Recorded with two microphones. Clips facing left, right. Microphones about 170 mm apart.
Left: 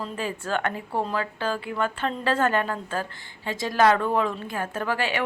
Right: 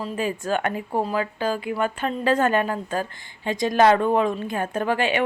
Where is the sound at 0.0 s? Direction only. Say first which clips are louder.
Right 4 dB; 15° right (ahead or behind).